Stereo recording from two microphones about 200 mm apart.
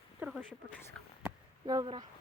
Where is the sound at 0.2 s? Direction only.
10° right (ahead or behind).